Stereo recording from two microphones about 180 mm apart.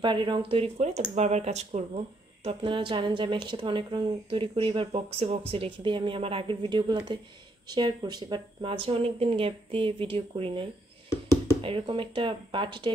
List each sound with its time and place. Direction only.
0.0 s speech: 25° right (ahead or behind)